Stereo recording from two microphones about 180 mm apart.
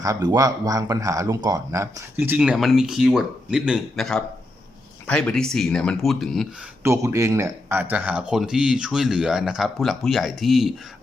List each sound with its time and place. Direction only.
0.0 s speech: 20° right (ahead or behind); by 6.5 s centre (ahead or behind)
6.8 s speech: 15° right (ahead or behind)